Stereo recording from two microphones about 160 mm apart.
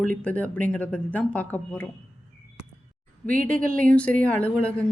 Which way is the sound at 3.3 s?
60° right (ahead or behind).